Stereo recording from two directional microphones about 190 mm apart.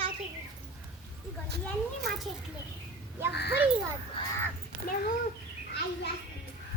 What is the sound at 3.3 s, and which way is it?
Dog, 60° left (ahead or behind).